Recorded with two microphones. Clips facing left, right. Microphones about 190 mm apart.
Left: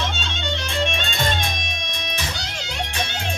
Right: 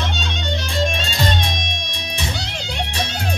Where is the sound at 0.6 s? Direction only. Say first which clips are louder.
Right 2 dB; 35° right (ahead or behind).